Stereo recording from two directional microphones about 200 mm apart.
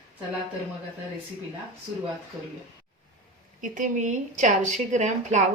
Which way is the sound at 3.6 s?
40° right (ahead or behind).